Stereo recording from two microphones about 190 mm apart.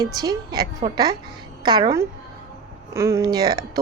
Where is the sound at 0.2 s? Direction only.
20° right (ahead or behind).